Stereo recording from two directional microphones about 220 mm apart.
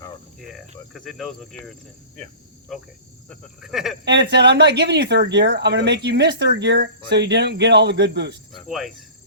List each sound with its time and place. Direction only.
0.3 s cricket: centre (ahead or behind)
0.9 s speech: centre (ahead or behind)
2.1 s cricket: centre (ahead or behind)
3.2 s speech: centre (ahead or behind)
4.0 s speech: 50° right (ahead or behind)
8.5 s cricket: centre (ahead or behind)